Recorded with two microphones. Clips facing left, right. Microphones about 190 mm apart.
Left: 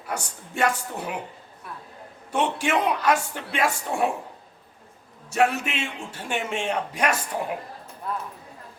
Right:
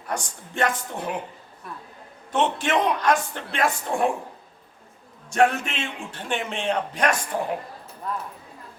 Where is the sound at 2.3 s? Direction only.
10° left (ahead or behind).